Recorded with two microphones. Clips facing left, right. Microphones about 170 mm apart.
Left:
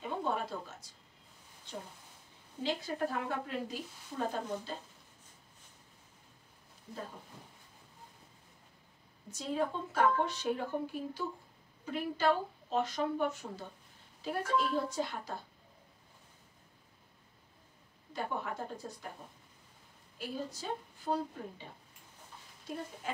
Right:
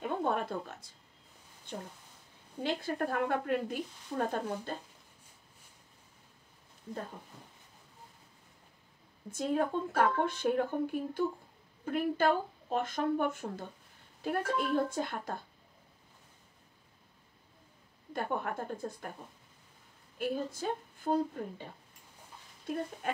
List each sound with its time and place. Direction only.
0.0 s a sound: 55° right (ahead or behind)
2.6 s speech: 55° right (ahead or behind)
9.3 s speech: 55° right (ahead or behind)
18.1 s speech: 55° right (ahead or behind)
20.2 s speech: 55° right (ahead or behind)
23.0 s speech: 60° right (ahead or behind)